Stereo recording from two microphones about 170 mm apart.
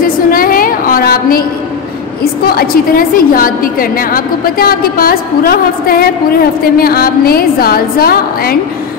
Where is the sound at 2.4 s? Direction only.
60° left (ahead or behind).